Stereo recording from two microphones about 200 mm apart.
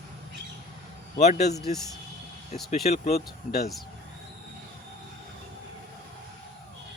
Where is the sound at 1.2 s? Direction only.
35° left (ahead or behind).